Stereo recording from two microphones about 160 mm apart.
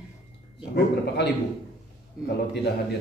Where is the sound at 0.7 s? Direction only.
90° left.